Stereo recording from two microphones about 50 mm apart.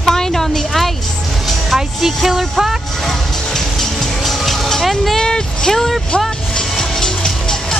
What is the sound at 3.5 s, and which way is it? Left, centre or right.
Music, centre.